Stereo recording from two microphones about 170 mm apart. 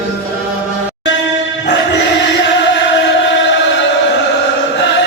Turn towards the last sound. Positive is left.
turn(degrees=90)